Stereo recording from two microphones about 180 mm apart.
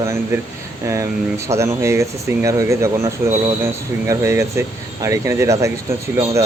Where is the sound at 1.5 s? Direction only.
15° right (ahead or behind).